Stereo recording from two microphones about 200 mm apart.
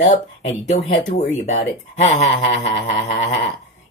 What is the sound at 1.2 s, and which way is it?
Speech, 35° left (ahead or behind).